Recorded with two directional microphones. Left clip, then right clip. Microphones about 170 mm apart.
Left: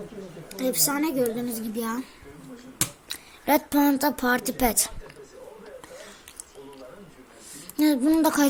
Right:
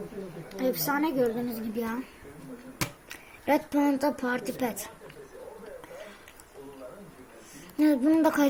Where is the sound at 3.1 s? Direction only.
35° left (ahead or behind).